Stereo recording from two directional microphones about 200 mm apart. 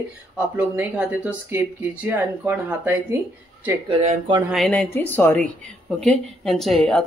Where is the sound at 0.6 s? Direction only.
10° right (ahead or behind).